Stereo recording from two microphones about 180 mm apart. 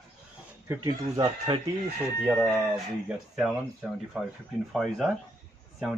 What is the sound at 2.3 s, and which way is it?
Speech, centre (ahead or behind).